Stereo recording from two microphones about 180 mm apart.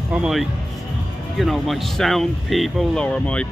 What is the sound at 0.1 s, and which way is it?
Speech, 5° right (ahead or behind).